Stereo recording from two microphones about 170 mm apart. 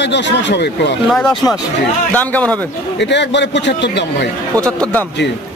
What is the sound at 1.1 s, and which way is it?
Speech, centre (ahead or behind).